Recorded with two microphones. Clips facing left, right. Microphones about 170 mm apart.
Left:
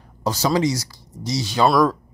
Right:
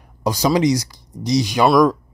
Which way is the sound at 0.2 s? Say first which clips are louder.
Right 3 dB; 15° right (ahead or behind).